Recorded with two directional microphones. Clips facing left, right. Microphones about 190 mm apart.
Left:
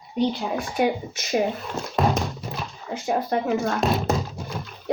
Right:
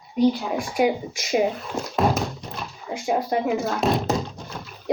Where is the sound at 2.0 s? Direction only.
Centre (ahead or behind).